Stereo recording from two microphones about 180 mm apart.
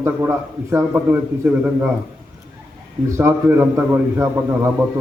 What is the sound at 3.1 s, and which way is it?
A man's voice, 15° right (ahead or behind).